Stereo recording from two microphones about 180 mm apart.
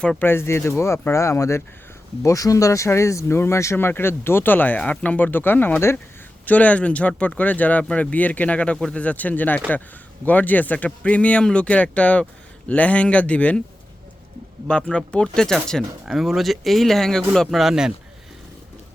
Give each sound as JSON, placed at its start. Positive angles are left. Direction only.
{"t": 0.0, "sound": "speech", "side_deg": 5}
{"t": 14.7, "sound": "speech", "side_deg": 5}